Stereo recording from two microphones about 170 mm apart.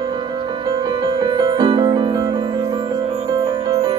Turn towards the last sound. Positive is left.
turn(degrees=-20)  # may be behind; listen again after turning